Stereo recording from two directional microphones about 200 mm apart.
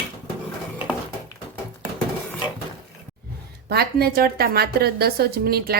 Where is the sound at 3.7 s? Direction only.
50° right (ahead or behind).